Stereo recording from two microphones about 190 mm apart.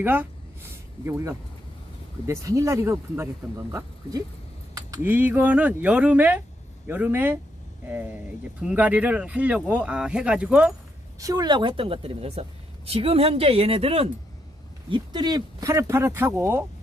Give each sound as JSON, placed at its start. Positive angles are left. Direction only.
{"t": 0.0, "sound": "speech", "side_deg": -10}
{"t": 11.2, "sound": "a woman's voice", "side_deg": -20}